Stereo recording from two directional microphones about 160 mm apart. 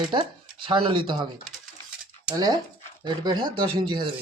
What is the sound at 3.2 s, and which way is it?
Speech, 30° right (ahead or behind).